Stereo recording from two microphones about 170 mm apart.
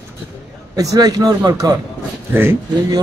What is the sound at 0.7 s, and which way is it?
A man's voice, 20° right (ahead or behind).